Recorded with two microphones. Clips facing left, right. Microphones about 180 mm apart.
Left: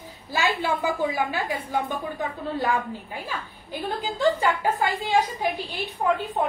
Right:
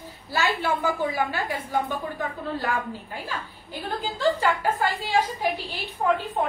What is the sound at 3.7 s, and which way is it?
A woman's voice, 15° left (ahead or behind).